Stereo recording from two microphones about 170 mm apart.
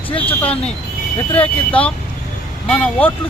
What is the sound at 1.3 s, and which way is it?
Speech, 10° left (ahead or behind).